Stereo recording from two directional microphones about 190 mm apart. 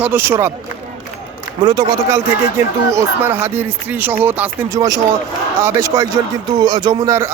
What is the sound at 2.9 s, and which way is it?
Speech, 15° right (ahead or behind).